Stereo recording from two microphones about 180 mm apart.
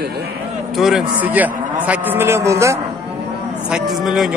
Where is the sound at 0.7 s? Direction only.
Centre (ahead or behind).